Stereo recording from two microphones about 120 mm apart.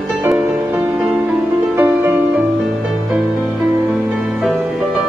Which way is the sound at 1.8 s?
20° right (ahead or behind).